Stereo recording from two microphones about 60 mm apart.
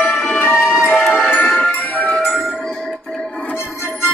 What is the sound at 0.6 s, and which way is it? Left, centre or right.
Music, centre.